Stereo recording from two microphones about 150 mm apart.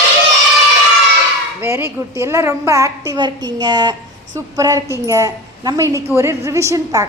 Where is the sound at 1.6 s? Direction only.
15° right (ahead or behind).